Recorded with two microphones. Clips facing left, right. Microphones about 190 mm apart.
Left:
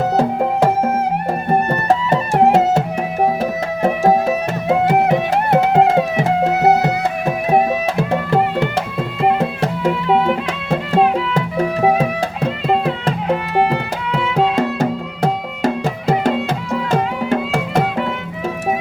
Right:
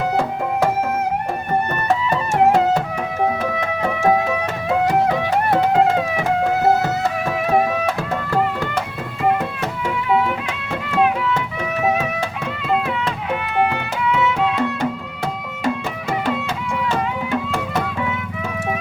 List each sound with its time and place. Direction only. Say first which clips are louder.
1.5 s music: left 4 dB; 35° left (ahead or behind)
2.0 s music: left 1 dB; 25° left (ahead or behind)
3.8 s music: left 4 dB; 30° left (ahead or behind)